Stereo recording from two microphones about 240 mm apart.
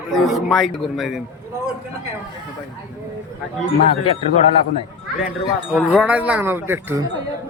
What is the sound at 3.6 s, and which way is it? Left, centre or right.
Speech, left.